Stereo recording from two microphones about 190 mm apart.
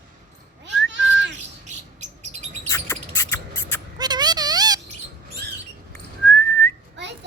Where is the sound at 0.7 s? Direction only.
70° right (ahead or behind).